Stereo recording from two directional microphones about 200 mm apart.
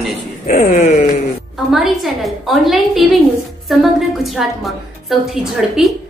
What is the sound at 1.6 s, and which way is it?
A man's voice, centre (ahead or behind).